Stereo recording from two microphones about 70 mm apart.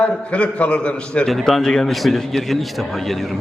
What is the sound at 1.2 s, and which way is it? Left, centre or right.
A man's voice, centre.